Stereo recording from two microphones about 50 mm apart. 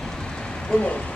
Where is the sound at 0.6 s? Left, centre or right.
Left.